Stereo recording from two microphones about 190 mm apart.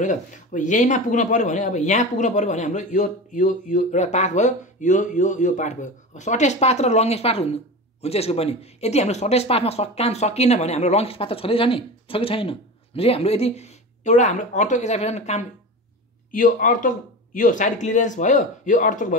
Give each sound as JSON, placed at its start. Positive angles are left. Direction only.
{"t": 0.0, "sound": "speech", "side_deg": 40}